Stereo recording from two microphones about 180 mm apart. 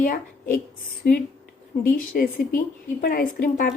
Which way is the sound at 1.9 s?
50° left (ahead or behind).